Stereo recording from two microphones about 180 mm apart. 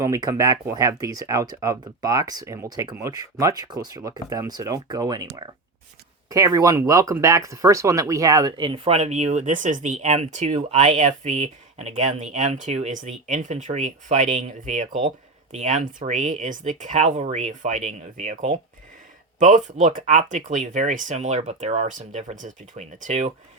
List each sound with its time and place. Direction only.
0.0 s speech: 15° right (ahead or behind); by 23.3 s 40° right (ahead or behind)